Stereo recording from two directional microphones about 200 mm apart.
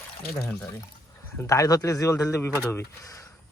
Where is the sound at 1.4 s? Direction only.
15° left (ahead or behind).